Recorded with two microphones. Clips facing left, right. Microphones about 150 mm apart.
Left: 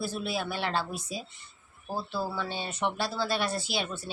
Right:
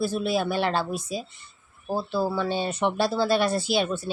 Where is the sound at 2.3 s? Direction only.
40° right (ahead or behind).